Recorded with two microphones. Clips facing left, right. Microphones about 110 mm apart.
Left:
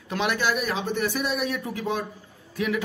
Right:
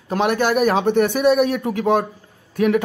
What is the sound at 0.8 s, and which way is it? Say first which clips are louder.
Speech: right 11 dB; 60° right (ahead or behind).